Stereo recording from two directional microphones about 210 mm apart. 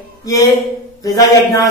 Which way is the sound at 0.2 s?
15° left (ahead or behind).